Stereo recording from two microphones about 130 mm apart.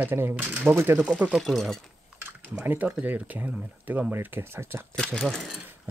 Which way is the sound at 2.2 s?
10° right (ahead or behind).